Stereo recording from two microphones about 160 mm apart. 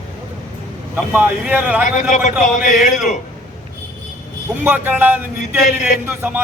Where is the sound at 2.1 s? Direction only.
50° left (ahead or behind).